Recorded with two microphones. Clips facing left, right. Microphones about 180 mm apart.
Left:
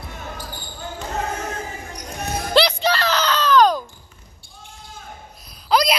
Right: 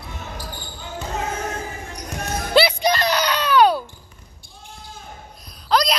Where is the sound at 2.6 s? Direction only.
10° right (ahead or behind).